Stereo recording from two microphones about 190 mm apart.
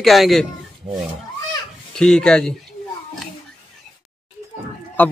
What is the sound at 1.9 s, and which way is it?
Speech, 5° left (ahead or behind).